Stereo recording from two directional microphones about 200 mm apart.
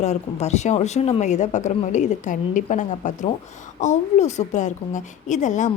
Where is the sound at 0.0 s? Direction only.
35° left (ahead or behind).